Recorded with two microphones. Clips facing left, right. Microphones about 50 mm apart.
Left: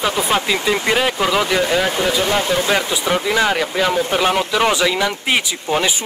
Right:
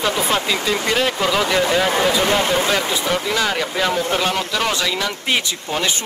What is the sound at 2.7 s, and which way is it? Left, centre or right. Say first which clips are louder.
Speech: left 2 dB; centre.